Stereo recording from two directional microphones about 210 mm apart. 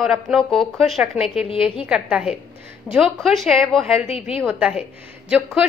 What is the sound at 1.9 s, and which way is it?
A woman's voice, 5° right (ahead or behind).